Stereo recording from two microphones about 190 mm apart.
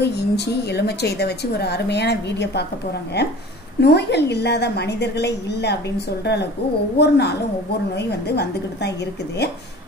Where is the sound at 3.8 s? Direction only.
60° left (ahead or behind).